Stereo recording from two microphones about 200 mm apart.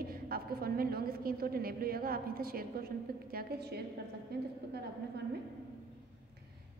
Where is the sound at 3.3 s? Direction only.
55° right (ahead or behind).